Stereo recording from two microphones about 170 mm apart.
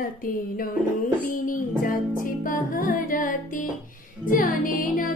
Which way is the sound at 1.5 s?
55° left (ahead or behind).